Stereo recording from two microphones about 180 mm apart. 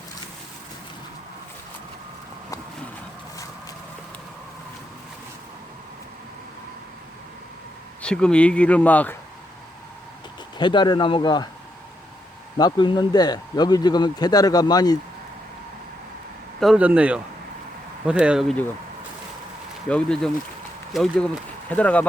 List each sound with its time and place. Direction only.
8.0 s a man's voice: 5° left (ahead or behind)
10.6 s speech: 25° left (ahead or behind)
12.5 s speech: 25° left (ahead or behind)
16.6 s speech: 5° right (ahead or behind)
19.9 s a man's voice: 5° left (ahead or behind)